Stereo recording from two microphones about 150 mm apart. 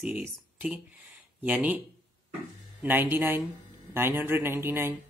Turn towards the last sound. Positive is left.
turn(degrees=-15)  # may be behind; listen again after turning